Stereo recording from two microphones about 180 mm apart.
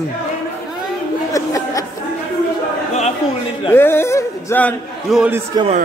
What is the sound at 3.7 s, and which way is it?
A man's voice, 10° left (ahead or behind).